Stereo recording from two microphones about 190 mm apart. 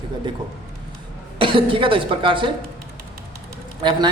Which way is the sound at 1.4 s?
25° right (ahead or behind).